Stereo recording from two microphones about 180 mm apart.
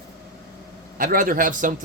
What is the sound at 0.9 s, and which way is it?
Speech, 50° right (ahead or behind).